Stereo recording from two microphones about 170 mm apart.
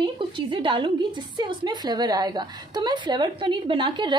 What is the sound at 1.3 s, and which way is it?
A woman's voice, 25° right (ahead or behind).